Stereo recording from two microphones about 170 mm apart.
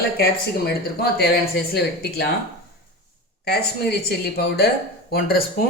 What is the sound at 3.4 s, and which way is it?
Speech, 70° left (ahead or behind).